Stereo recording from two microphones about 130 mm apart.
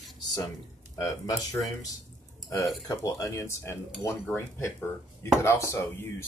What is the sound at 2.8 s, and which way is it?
Speech, 25° left (ahead or behind).